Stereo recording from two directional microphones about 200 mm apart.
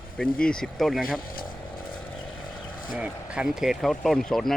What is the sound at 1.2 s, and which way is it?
Speech, 45° left (ahead or behind).